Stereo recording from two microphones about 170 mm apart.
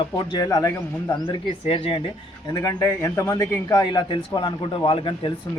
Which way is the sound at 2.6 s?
15° left (ahead or behind).